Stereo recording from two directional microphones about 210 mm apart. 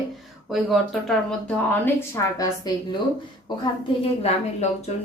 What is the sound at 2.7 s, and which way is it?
Speech, 20° left (ahead or behind).